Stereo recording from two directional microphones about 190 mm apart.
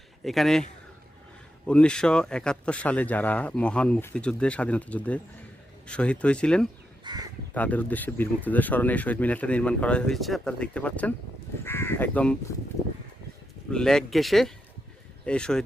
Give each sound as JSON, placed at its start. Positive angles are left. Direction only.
{"t": 0.3, "sound": "speech", "side_deg": 0}
{"t": 1.6, "sound": "speech", "side_deg": 5}
{"t": 7.0, "sound": "speech", "side_deg": -20}
{"t": 7.5, "sound": "speech", "side_deg": 10}
{"t": 13.7, "sound": "speech", "side_deg": 5}